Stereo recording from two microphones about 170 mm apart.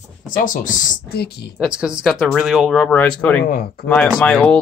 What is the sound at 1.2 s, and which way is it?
Speech, 70° left (ahead or behind).